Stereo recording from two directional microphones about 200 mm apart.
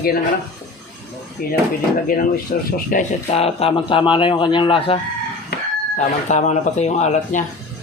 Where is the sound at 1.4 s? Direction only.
45° left (ahead or behind).